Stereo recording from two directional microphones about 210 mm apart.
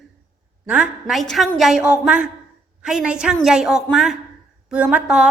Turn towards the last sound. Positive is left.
turn(degrees=-5)  # may be behind; listen again after turning